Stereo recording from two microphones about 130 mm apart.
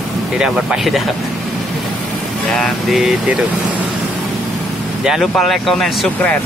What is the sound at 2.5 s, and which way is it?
Speech, centre (ahead or behind).